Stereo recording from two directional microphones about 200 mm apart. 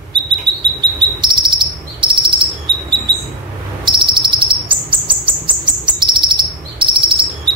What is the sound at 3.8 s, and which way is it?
Bird, 25° right (ahead or behind).